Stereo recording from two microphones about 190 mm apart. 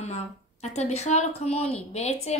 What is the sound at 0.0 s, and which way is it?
A woman's voice, 35° left (ahead or behind).